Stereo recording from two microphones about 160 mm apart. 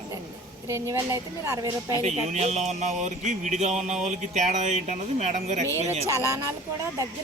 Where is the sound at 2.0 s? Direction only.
45° right (ahead or behind).